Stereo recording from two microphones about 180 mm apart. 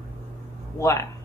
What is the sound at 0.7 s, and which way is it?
Speech, 15° left (ahead or behind).